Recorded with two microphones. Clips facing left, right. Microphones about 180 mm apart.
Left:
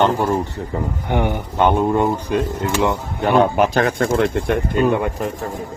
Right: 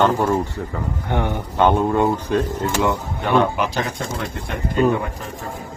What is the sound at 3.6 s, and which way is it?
Speech, 55° left (ahead or behind).